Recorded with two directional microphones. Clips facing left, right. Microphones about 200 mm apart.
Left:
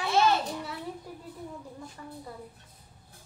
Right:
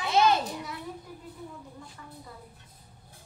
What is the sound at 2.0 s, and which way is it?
Speech, 35° left (ahead or behind).